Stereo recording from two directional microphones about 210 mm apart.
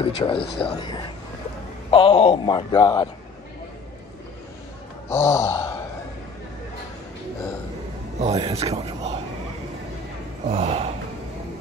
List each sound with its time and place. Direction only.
0.2 s speech: 25° left (ahead or behind)
5.1 s a sound: 10° left (ahead or behind)
8.2 s speech: 30° right (ahead or behind)
10.5 s speech: 30° right (ahead or behind)